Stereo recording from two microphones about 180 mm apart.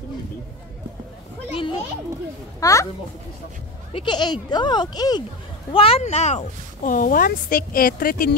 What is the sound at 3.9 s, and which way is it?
A woman's voice, 25° left (ahead or behind).